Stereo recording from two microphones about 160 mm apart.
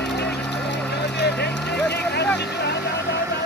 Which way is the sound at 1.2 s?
90° left.